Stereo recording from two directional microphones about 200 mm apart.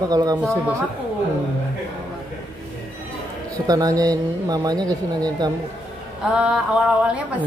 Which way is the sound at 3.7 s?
20° right (ahead or behind).